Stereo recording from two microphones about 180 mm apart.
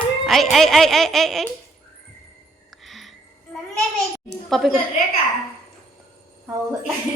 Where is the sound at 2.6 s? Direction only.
Centre (ahead or behind).